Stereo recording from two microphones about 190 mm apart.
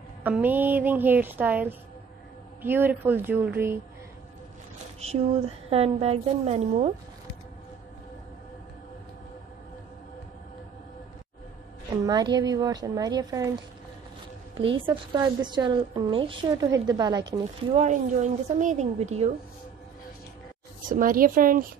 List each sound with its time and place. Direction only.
0.2 s a woman's voice: 10° right (ahead or behind)
5.0 s a woman's voice: 35° right (ahead or behind)
12.1 s a woman's voice: 20° right (ahead or behind)
14.9 s a woman's voice: 25° right (ahead or behind)
17.7 s a woman's voice: 40° right (ahead or behind)
20.9 s a woman's voice: 45° right (ahead or behind)